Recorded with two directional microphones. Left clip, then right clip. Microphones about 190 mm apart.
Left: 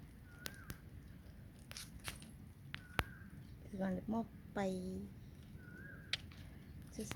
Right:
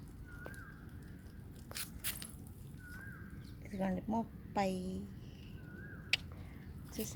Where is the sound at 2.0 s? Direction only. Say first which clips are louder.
Right 4 dB; 45° right (ahead or behind).